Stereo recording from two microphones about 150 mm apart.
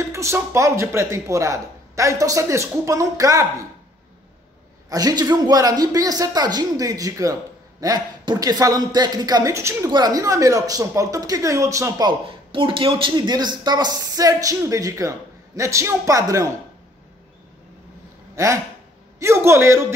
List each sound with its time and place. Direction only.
0.1 s speech: 20° right (ahead or behind)
4.8 s speech: 25° right (ahead or behind)
18.3 s a man's voice: 20° right (ahead or behind)